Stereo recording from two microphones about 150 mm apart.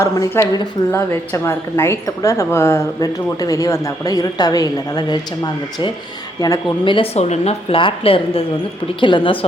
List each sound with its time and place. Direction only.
0.0 s a woman's voice: 20° left (ahead or behind)
0.9 s a woman's voice: 15° left (ahead or behind); by 9.4 s 35° left (ahead or behind)